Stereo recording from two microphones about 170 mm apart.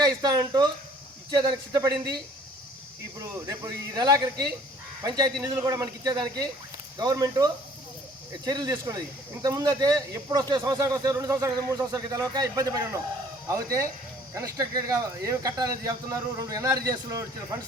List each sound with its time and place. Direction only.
0.0 s speech: 20° right (ahead or behind)
3.2 s speech: 20° right (ahead or behind)